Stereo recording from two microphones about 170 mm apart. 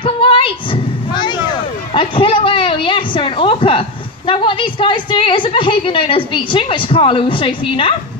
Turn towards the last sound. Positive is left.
turn(degrees=30)  # may be behind; listen again after turning